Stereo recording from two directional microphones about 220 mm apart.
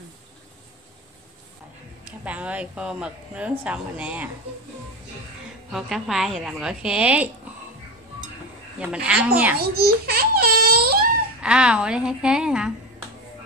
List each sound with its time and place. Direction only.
2.0 s speech: 5° right (ahead or behind)
5.7 s speech: centre (ahead or behind)
8.7 s speech: 5° right (ahead or behind)
9.6 s crying: 45° right (ahead or behind)
11.4 s speech: 5° right (ahead or behind)